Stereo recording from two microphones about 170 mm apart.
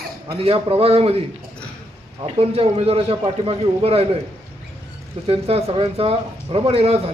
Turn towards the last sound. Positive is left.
turn(degrees=-35)  # may be behind; listen again after turning